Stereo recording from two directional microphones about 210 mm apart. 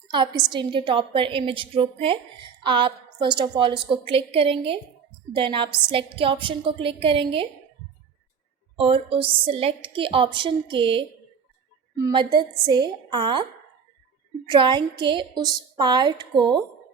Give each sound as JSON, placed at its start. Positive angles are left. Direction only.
{"t": 0.1, "sound": "a woman's voice", "side_deg": -20}
{"t": 8.8, "sound": "a woman's voice", "side_deg": -25}
{"t": 14.5, "sound": "a woman's voice", "side_deg": -20}